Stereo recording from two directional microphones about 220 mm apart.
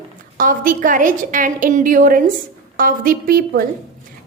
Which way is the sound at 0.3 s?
40° right (ahead or behind).